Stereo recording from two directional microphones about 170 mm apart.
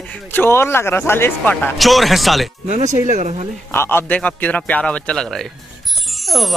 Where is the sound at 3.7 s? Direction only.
15° left (ahead or behind).